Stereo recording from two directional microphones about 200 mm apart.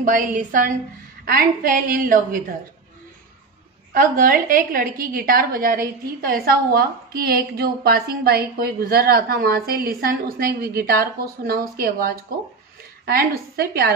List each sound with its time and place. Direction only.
0.0 s a woman's voice: 40° right (ahead or behind)
3.9 s a woman's voice: 45° right (ahead or behind)